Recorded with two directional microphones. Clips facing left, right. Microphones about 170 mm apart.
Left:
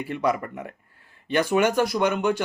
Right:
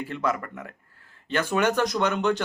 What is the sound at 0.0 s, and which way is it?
Speech, 15° left (ahead or behind).